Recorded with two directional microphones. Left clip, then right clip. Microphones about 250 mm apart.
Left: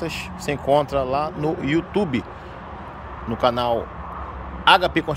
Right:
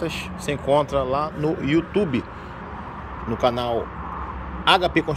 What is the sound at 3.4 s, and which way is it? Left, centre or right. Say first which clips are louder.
Speech: left 2 dB; centre.